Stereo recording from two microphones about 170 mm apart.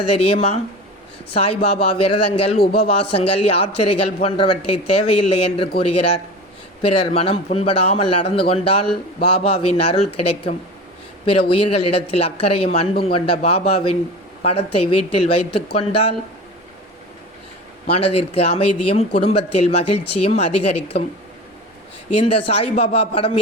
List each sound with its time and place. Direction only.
0.0 s speech: 35° left (ahead or behind)
17.9 s speech: 35° left (ahead or behind)
22.2 s speech: 35° left (ahead or behind)